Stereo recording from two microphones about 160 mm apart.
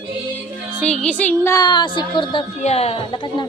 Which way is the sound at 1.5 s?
25° left (ahead or behind).